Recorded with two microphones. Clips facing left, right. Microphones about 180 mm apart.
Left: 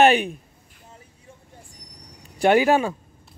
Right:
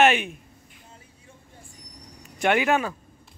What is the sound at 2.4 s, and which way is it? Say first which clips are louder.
Speech: left 5 dB; 35° left (ahead or behind).